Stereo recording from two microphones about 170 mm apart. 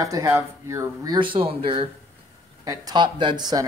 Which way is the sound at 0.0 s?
20° right (ahead or behind).